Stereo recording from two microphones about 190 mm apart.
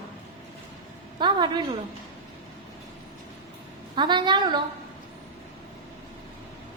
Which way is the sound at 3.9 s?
25° right (ahead or behind).